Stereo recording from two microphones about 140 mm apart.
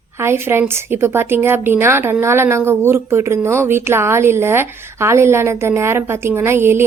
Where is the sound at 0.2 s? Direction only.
15° right (ahead or behind).